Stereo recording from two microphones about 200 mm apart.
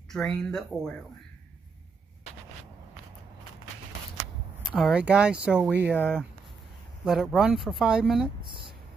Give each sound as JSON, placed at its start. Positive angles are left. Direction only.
{"t": 0.1, "sound": "speech", "side_deg": 5}
{"t": 4.7, "sound": "speech", "side_deg": -5}
{"t": 5.9, "sound": "speech", "side_deg": 5}
{"t": 8.4, "sound": "a sound", "side_deg": -25}